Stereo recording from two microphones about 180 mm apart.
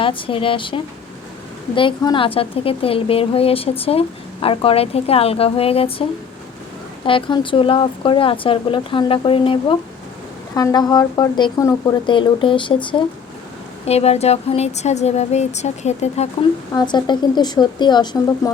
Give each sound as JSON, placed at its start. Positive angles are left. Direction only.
{"t": 0.0, "sound": "a woman's voice", "side_deg": 30}
{"t": 10.5, "sound": "a woman's voice", "side_deg": 20}
{"t": 16.7, "sound": "speech", "side_deg": 25}